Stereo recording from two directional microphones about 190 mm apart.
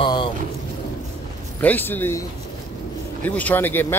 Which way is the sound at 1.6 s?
10° left (ahead or behind).